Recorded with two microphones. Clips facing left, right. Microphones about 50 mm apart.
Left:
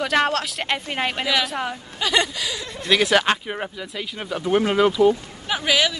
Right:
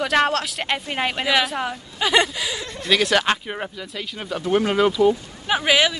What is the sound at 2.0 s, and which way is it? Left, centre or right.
Speech, centre.